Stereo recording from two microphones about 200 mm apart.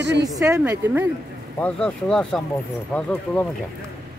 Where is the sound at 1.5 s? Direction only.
5° left (ahead or behind).